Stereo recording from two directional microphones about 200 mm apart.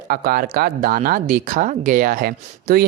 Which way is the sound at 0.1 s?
50° right (ahead or behind).